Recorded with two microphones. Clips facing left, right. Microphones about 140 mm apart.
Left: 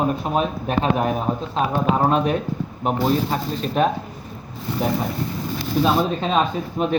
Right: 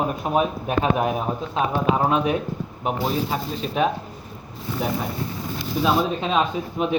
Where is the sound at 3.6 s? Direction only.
5° right (ahead or behind).